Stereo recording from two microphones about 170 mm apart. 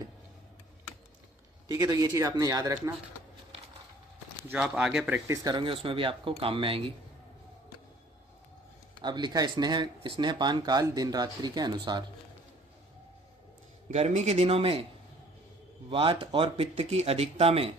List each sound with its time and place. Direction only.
1.6 s speech: 20° right (ahead or behind)
4.4 s speech: 5° right (ahead or behind)
5.4 s speech: 25° right (ahead or behind)
9.0 s speech: 25° right (ahead or behind)
13.9 s speech: 40° right (ahead or behind)
15.9 s speech: 30° right (ahead or behind)